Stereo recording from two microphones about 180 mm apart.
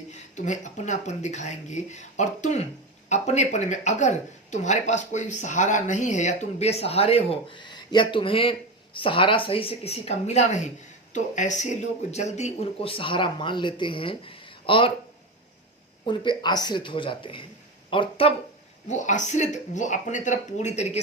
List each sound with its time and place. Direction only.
0.1 s speech: 40° left (ahead or behind)
16.0 s speech: 25° left (ahead or behind)
18.9 s speech: 45° left (ahead or behind)